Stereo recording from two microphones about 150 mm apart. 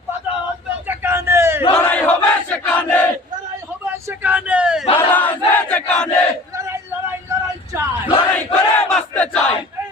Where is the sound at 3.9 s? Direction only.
15° right (ahead or behind).